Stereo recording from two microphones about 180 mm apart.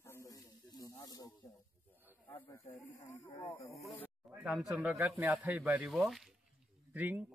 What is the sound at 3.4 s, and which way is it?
Speech, 15° left (ahead or behind).